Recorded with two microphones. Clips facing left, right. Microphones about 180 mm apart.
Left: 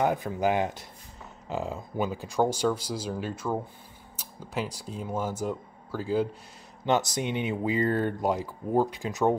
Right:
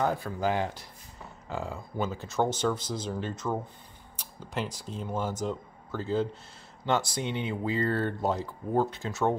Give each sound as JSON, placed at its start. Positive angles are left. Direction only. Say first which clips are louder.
{"t": 0.0, "sound": "speech", "louder": "left 3 dB", "side_deg": 15}